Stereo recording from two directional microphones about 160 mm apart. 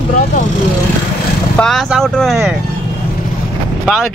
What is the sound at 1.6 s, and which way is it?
Speech, centre (ahead or behind).